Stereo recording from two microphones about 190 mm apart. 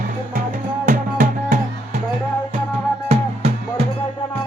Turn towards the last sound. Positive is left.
turn(degrees=-30)  # may be behind; listen again after turning